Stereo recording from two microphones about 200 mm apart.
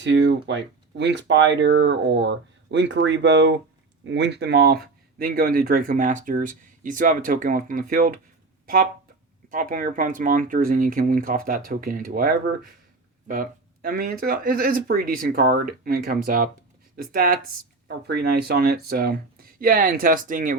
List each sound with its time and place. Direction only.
0.0 s speech: 65° right (ahead or behind); by 20.6 s 40° right (ahead or behind)